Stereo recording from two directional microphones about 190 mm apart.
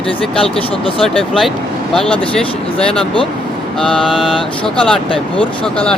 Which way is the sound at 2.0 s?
30° left (ahead or behind).